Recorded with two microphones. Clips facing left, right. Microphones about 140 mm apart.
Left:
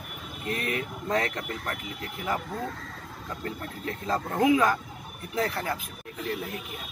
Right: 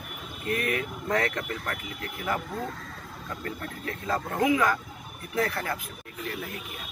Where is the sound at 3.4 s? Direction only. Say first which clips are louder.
Left 1 dB; 25° left (ahead or behind).